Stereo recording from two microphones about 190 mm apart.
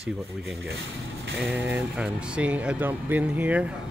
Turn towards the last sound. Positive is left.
turn(degrees=-5)  # may be behind; listen again after turning